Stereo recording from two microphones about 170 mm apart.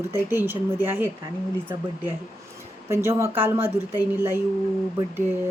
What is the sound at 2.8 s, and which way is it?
Speech, 15° right (ahead or behind).